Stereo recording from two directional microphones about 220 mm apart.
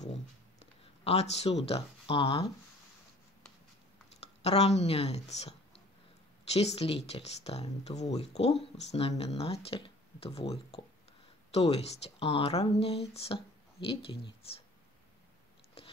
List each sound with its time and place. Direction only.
1.0 s speech: 30° left (ahead or behind)
4.2 s speech: 30° left (ahead or behind)